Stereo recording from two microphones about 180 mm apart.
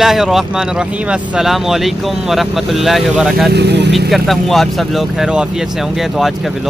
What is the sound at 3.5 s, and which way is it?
Speech, 70° right (ahead or behind).